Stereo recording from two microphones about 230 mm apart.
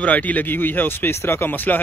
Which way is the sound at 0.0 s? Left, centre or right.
Centre.